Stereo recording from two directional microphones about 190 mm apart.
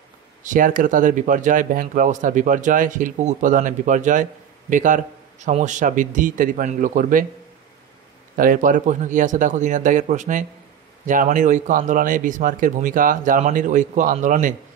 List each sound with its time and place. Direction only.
0.4 s speech: 45° right (ahead or behind)
8.4 s speech: 45° right (ahead or behind)